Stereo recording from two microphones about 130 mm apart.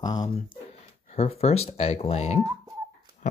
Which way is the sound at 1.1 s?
50° left (ahead or behind).